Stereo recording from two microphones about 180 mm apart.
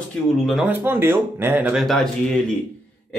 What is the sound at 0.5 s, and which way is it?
Speech, 5° right (ahead or behind).